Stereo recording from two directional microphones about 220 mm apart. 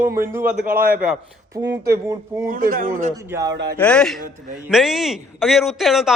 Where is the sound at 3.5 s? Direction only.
50° right (ahead or behind).